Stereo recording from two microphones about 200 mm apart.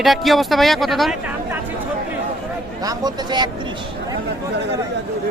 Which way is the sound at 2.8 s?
20° right (ahead or behind).